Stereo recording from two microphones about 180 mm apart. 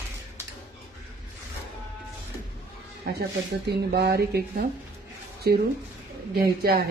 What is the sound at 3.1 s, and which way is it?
Speech, 65° right (ahead or behind).